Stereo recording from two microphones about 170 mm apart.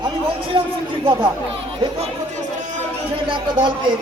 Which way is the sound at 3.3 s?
30° right (ahead or behind).